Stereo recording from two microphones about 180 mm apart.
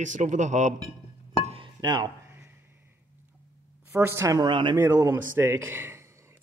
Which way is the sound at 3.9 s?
15° right (ahead or behind).